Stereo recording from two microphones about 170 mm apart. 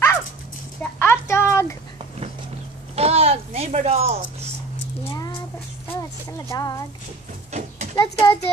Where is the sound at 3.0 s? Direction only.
35° right (ahead or behind).